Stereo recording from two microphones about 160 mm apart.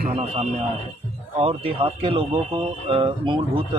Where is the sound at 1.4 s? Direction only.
35° right (ahead or behind).